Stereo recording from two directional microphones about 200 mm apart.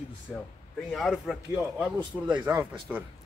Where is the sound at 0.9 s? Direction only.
Centre (ahead or behind).